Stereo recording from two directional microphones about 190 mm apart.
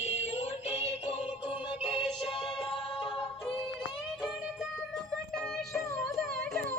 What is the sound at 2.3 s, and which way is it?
Music, 30° left (ahead or behind).